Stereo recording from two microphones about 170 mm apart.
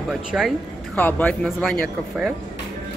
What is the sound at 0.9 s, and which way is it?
Speech, 10° left (ahead or behind).